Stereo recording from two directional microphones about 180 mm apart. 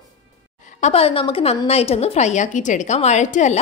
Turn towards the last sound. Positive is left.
turn(degrees=40)  # may be behind; listen again after turning